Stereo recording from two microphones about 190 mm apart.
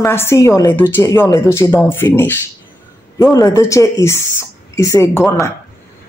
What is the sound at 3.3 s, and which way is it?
A woman's voice, 20° left (ahead or behind).